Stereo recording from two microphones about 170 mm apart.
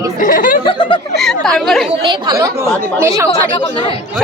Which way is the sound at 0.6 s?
30° left (ahead or behind).